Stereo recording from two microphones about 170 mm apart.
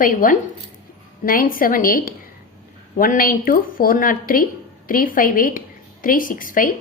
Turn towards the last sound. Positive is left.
turn(degrees=55)  # may be behind; listen again after turning